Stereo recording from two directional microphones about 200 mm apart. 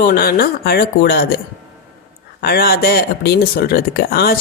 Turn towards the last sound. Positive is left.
turn(degrees=50)  # may be behind; listen again after turning